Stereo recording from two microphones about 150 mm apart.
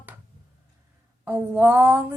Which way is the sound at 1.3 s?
10° right (ahead or behind).